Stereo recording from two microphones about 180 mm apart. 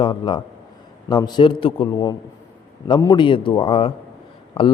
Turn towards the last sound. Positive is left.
turn(degrees=30)  # may be behind; listen again after turning